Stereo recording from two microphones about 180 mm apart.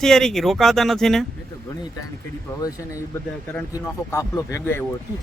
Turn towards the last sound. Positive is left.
turn(degrees=15)  # may be behind; listen again after turning